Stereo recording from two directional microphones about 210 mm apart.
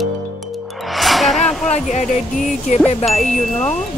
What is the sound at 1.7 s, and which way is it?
Speech, 35° left (ahead or behind).